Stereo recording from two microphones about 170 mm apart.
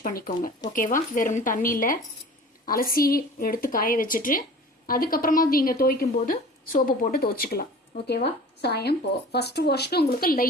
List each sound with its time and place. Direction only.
0.0 s a woman's voice: 55° left (ahead or behind)